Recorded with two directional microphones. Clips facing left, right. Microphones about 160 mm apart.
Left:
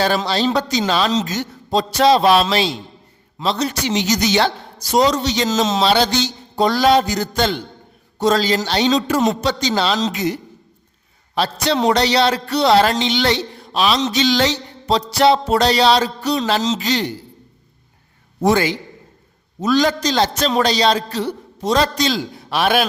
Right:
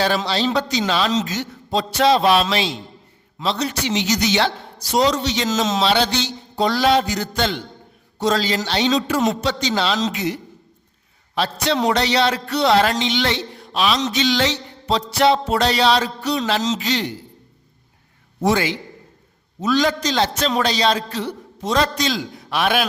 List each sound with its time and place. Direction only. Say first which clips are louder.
0.0 s a man's voice: left 2 dB; 45° left (ahead or behind)
11.3 s a man's voice: left 2 dB; 35° left (ahead or behind)
18.4 s a man's voice: left 3 dB; 40° left (ahead or behind)